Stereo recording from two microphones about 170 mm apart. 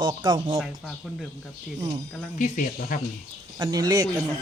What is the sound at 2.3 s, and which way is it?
Speech, 55° left (ahead or behind).